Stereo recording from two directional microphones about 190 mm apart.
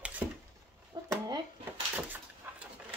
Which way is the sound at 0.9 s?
25° right (ahead or behind).